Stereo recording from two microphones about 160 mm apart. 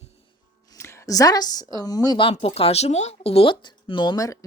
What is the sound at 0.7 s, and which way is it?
A woman's voice, 15° left (ahead or behind).